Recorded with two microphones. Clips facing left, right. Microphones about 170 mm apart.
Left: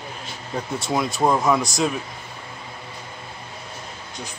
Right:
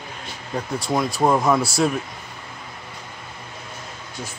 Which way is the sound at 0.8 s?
Centre (ahead or behind).